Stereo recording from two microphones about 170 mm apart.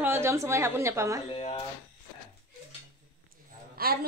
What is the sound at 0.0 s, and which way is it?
A woman's voice, 15° right (ahead or behind).